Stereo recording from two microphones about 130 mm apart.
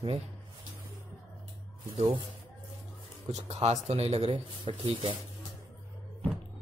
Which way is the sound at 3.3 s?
55° right (ahead or behind).